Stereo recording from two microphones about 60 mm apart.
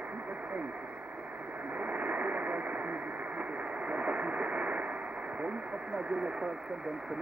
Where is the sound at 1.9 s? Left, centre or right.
Right.